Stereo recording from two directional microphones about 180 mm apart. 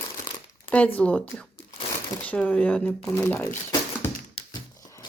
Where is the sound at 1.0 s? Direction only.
5° left (ahead or behind).